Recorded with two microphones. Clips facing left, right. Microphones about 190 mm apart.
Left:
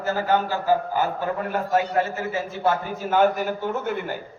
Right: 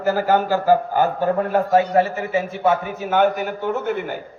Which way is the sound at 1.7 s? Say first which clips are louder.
Right 5 dB; 65° right (ahead or behind).